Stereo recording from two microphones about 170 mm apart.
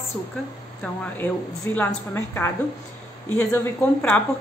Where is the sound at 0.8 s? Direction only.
5° left (ahead or behind).